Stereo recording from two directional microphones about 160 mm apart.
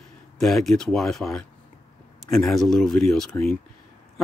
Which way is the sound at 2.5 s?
Centre (ahead or behind).